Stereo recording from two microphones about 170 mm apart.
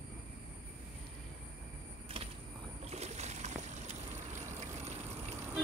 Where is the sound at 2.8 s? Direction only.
40° right (ahead or behind).